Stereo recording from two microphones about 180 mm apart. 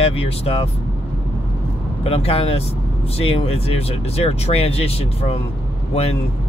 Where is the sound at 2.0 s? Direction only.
30° left (ahead or behind).